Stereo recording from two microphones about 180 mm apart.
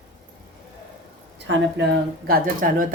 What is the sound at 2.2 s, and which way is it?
Speech, 55° right (ahead or behind).